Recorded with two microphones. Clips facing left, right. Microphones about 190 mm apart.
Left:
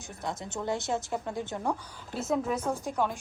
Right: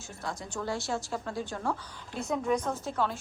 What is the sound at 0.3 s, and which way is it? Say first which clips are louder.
A woman's voice: left 2 dB; 20° left (ahead or behind).